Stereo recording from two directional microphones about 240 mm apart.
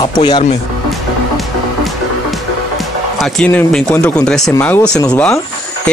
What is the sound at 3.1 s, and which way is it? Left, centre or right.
Speech, centre.